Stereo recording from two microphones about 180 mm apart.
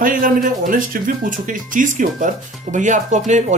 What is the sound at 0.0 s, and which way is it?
Speech, 50° right (ahead or behind).